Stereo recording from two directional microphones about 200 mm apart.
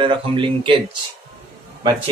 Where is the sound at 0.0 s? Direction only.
25° right (ahead or behind).